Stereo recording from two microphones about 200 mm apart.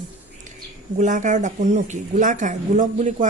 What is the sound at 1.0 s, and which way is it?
Speech, 40° right (ahead or behind).